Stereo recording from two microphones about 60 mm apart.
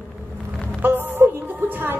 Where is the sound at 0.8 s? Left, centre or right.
Right.